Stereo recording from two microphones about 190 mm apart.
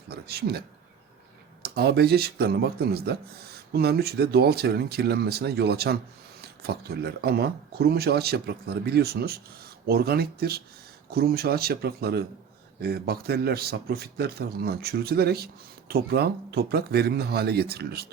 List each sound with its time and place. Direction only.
0.1 s speech: 55° right (ahead or behind)
1.6 s speech: 55° right (ahead or behind)